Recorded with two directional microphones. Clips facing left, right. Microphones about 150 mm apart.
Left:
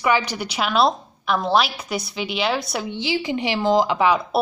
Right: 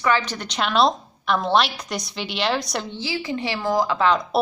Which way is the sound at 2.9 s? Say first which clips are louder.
Left 7 dB; 20° left (ahead or behind).